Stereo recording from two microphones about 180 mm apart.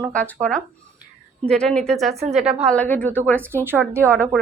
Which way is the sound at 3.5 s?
10° right (ahead or behind).